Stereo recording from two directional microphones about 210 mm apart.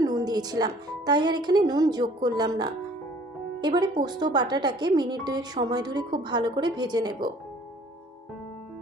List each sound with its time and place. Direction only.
0.0 s speech: 20° right (ahead or behind)